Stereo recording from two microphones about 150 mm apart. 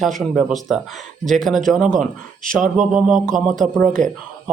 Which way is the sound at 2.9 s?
5° right (ahead or behind).